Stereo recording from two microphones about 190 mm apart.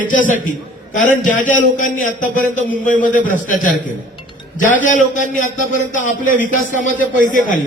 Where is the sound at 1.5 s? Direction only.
45° left (ahead or behind).